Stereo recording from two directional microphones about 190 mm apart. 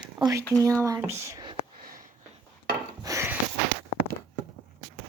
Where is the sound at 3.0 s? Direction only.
15° right (ahead or behind).